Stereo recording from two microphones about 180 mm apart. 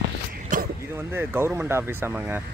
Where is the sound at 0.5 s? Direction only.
45° right (ahead or behind).